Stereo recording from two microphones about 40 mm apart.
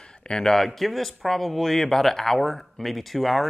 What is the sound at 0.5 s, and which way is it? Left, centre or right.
Speech, centre.